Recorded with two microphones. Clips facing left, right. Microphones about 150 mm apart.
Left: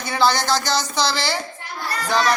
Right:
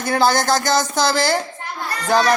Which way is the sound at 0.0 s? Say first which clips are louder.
Right 3 dB; 50° right (ahead or behind).